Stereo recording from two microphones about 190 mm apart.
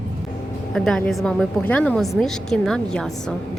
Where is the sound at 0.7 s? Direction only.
5° left (ahead or behind).